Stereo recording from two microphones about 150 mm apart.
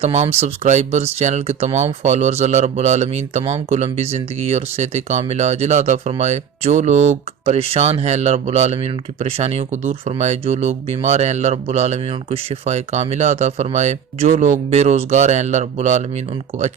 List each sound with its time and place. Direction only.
0.0 s speech: 45° right (ahead or behind)